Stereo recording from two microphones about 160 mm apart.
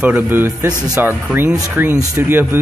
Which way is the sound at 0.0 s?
10° right (ahead or behind).